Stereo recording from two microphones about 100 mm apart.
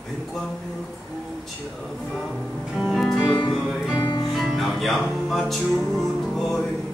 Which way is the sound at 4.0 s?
45° left (ahead or behind).